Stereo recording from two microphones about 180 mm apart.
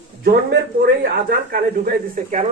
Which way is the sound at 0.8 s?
55° right (ahead or behind).